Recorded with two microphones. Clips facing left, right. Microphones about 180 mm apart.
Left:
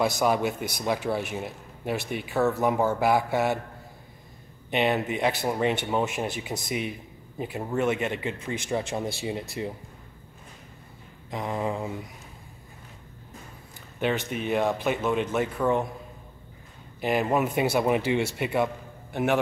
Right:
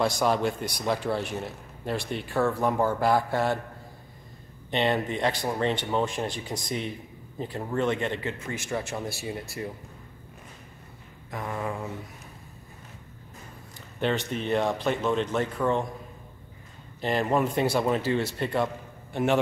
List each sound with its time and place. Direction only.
0.0 s a man's voice: 5° left (ahead or behind)
4.6 s a man's voice: 5° left (ahead or behind)
11.2 s speech: 20° left (ahead or behind)
13.9 s a man's voice: 10° left (ahead or behind)
17.0 s a man's voice: 10° left (ahead or behind)